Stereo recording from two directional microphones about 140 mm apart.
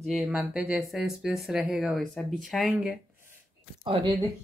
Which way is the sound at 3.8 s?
40° right (ahead or behind).